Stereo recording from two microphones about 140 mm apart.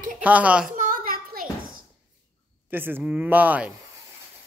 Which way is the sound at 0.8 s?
90° right.